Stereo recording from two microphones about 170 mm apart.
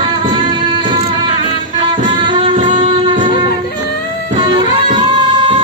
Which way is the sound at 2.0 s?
30° right (ahead or behind).